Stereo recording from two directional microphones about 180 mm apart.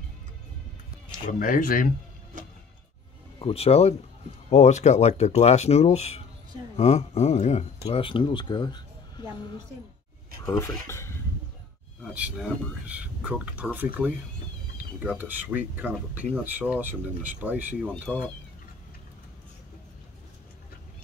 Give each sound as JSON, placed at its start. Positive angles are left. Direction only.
{"t": 1.4, "sound": "speech", "side_deg": 50}
{"t": 3.3, "sound": "speech", "side_deg": 35}
{"t": 10.4, "sound": "speech", "side_deg": 15}
{"t": 10.9, "sound": "a sound", "side_deg": 15}
{"t": 12.0, "sound": "speech", "side_deg": -5}
{"t": 15.0, "sound": "speech", "side_deg": -10}